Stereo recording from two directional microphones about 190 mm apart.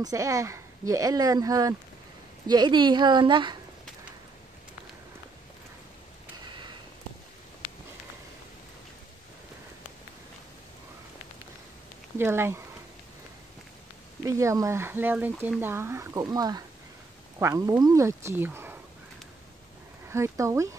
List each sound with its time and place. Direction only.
0.0 s a woman's voice: 15° right (ahead or behind)
6.4 s a sound: 25° right (ahead or behind)
12.2 s speech: 10° right (ahead or behind)
14.2 s speech: 15° right (ahead or behind)
20.1 s speech: 15° right (ahead or behind)